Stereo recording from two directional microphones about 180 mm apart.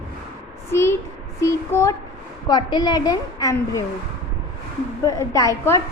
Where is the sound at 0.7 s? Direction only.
15° left (ahead or behind).